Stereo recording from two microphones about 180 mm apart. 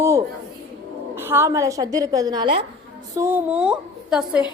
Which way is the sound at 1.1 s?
10° right (ahead or behind).